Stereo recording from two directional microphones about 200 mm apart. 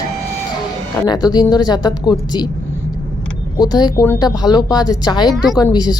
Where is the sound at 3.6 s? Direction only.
20° left (ahead or behind).